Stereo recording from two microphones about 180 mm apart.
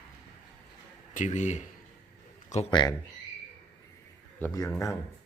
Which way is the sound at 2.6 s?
25° left (ahead or behind).